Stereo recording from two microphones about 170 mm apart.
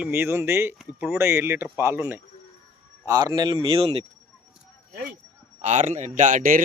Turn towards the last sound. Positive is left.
turn(degrees=-55)  # may be behind; listen again after turning